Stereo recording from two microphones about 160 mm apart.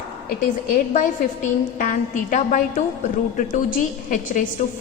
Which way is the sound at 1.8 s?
55° left (ahead or behind).